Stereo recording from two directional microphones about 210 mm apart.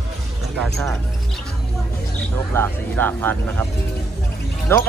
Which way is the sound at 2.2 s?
10° left (ahead or behind).